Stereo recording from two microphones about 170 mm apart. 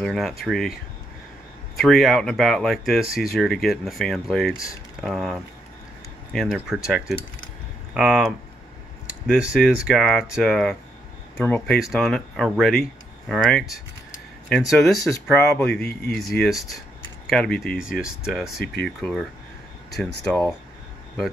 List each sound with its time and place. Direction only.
0.0 s speech: centre (ahead or behind)
1.8 s speech: centre (ahead or behind)
9.3 s speech: 5° right (ahead or behind)
15.0 s speech: 20° left (ahead or behind)
15.4 s speech: 10° left (ahead or behind)